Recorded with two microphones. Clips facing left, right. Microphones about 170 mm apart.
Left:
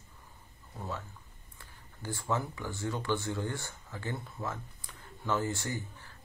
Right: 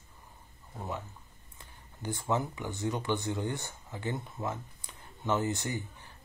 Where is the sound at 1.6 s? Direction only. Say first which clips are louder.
Right 3 dB; 20° right (ahead or behind).